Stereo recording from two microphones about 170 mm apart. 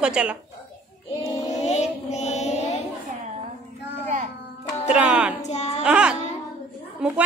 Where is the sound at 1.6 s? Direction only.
40° left (ahead or behind).